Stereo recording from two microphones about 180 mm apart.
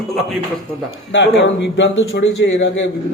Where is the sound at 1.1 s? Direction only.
85° left.